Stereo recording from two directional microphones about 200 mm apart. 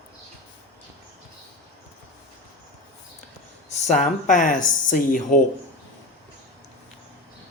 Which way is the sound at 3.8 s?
35° left (ahead or behind).